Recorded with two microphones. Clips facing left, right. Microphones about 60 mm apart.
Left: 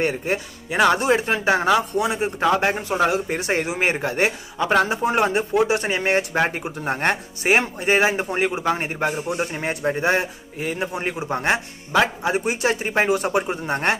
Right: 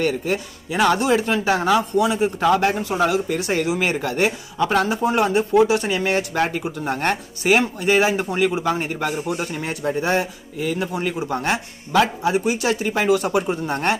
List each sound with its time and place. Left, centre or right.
0.0 s speech: left